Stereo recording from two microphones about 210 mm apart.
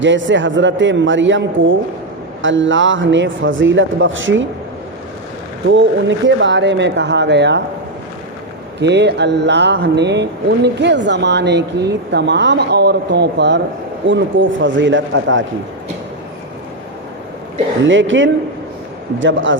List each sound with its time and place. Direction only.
0.0 s speech: 60° right (ahead or behind)
5.6 s speech: 60° right (ahead or behind)
8.8 s speech: 55° right (ahead or behind)
17.8 s speech: 65° right (ahead or behind)